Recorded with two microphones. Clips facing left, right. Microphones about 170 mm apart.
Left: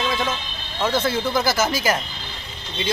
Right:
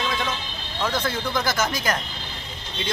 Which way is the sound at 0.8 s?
5° left (ahead or behind).